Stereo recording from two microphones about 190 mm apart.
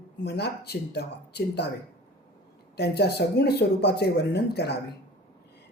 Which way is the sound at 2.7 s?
60° left (ahead or behind).